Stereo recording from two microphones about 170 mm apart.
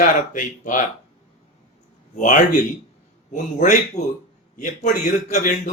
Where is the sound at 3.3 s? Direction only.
45° left (ahead or behind).